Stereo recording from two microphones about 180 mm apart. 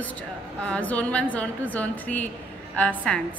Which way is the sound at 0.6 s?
5° left (ahead or behind).